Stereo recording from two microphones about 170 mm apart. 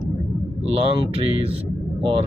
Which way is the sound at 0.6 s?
35° right (ahead or behind).